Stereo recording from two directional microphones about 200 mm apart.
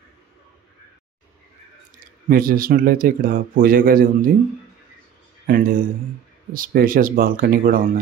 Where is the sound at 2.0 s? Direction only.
45° right (ahead or behind).